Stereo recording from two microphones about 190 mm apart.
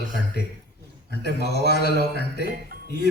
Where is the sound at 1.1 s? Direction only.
60° left (ahead or behind).